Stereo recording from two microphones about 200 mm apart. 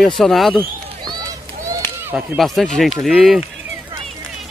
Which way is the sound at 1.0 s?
20° right (ahead or behind).